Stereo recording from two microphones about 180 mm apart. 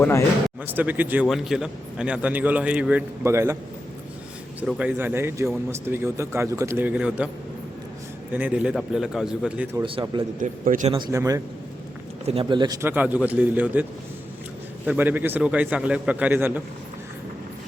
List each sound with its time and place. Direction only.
0.6 s speech: 10° right (ahead or behind)
4.6 s speech: 5° right (ahead or behind)
8.3 s a man's voice: 10° right (ahead or behind)
9.8 s speech: 30° right (ahead or behind)
10.4 s a man's voice: 45° right (ahead or behind)
10.9 s speech: 20° right (ahead or behind)
12.2 s speech: 35° right (ahead or behind)
12.9 s speech: 10° right (ahead or behind)
14.8 s speech: 10° right (ahead or behind)